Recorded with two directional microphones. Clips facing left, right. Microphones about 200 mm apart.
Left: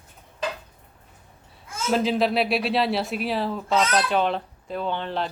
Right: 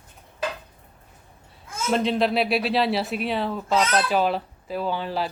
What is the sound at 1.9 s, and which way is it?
A woman's voice, centre (ahead or behind).